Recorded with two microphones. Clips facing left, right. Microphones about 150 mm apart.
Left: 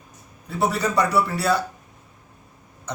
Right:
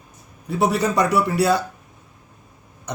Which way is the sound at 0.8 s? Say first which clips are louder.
Right 2 dB; 20° right (ahead or behind).